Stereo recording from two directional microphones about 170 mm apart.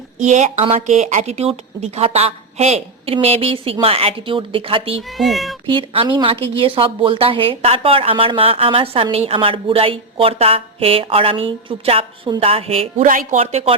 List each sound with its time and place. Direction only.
0.2 s a woman's voice: 45° right (ahead or behind)
5.1 s speech: centre (ahead or behind)
5.6 s a woman's voice: 30° right (ahead or behind)
13.1 s speech: 50° right (ahead or behind)
13.4 s a woman's voice: 35° right (ahead or behind)